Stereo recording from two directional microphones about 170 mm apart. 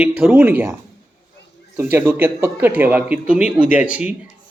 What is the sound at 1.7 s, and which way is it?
Speech, 10° right (ahead or behind).